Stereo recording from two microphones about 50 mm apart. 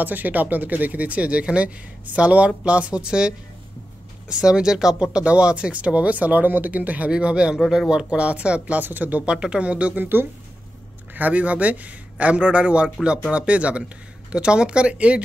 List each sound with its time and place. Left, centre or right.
0.0 s speech: right
7.1 s speech: centre
7.5 s speech: centre
7.9 s speech: centre
9.3 s speech: centre
11.1 s speech: right